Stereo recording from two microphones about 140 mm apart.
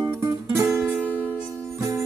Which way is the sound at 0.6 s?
5° right (ahead or behind).